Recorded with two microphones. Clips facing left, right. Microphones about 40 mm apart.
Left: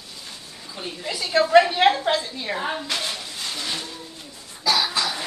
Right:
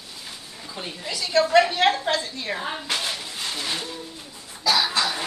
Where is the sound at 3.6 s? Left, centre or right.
Centre.